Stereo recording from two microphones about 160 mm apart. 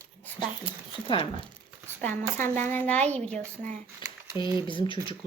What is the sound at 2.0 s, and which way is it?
A woman's voice, 15° left (ahead or behind).